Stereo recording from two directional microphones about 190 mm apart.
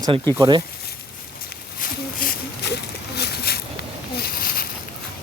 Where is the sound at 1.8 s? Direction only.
55° left (ahead or behind).